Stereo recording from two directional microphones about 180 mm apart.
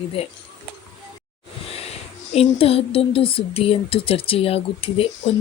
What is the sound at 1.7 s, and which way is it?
Speech, 35° left (ahead or behind).